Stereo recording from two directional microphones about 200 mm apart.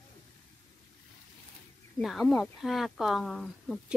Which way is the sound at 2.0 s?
Centre (ahead or behind).